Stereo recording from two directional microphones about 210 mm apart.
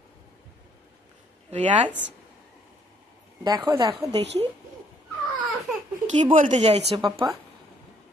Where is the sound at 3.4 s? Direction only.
20° right (ahead or behind).